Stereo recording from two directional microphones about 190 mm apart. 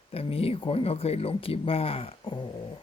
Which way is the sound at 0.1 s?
30° left (ahead or behind).